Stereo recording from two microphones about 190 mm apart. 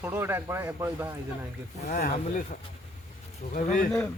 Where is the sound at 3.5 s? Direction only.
45° left (ahead or behind).